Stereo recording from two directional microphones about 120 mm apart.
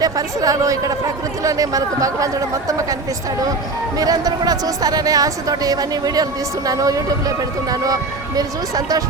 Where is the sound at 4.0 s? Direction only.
30° right (ahead or behind).